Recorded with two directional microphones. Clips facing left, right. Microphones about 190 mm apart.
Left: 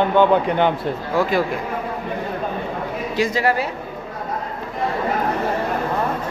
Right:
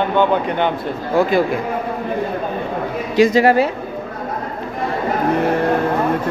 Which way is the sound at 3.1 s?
20° right (ahead or behind).